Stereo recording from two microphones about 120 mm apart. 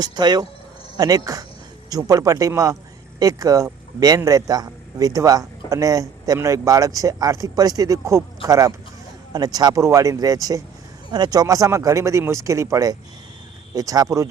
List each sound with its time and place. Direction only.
0.0 s a man's voice: 35° right (ahead or behind)